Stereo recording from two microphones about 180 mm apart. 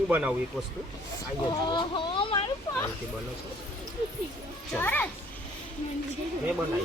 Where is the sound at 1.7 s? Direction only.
25° left (ahead or behind).